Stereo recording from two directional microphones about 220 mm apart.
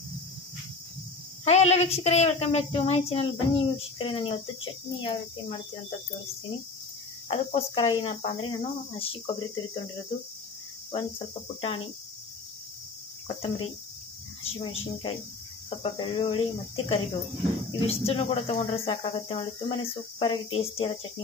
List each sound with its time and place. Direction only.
1.4 s a woman's voice: 30° left (ahead or behind)
7.2 s a woman's voice: 25° left (ahead or behind)
10.9 s a woman's voice: 25° left (ahead or behind)
13.3 s a woman's voice: 25° left (ahead or behind)
17.6 s a woman's voice: 25° left (ahead or behind)